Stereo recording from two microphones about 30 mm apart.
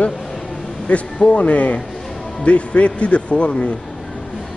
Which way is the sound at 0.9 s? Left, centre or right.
Left.